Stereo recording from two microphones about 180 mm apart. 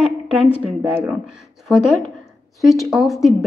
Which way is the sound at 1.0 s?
5° right (ahead or behind).